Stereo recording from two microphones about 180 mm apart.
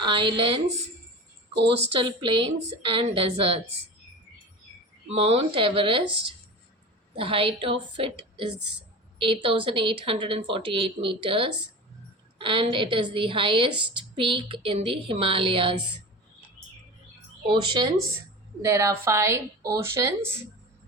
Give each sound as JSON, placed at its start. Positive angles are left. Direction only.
{"t": 0.0, "sound": "a woman's voice", "side_deg": -30}
{"t": 1.9, "sound": "a woman's voice", "side_deg": -30}
{"t": 5.0, "sound": "a woman's voice", "side_deg": -30}
{"t": 17.5, "sound": "a woman's voice", "side_deg": -25}
{"t": 18.6, "sound": "speech", "side_deg": -15}